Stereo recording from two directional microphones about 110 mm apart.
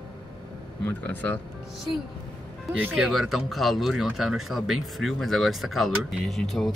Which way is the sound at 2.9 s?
5° right (ahead or behind).